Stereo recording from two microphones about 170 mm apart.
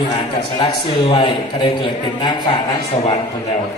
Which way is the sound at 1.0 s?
30° left (ahead or behind).